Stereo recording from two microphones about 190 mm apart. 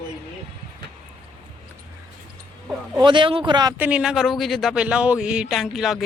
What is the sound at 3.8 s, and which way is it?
Speech, 5° right (ahead or behind).